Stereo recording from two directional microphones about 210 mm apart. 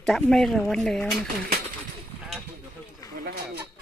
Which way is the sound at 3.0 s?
15° left (ahead or behind).